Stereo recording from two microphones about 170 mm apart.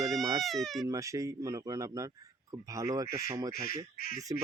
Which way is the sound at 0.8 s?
20° right (ahead or behind).